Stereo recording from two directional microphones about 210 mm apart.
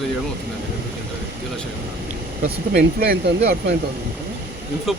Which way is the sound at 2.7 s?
50° right (ahead or behind).